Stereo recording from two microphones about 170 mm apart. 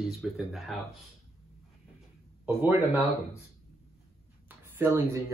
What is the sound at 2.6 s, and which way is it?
Speech, 10° right (ahead or behind).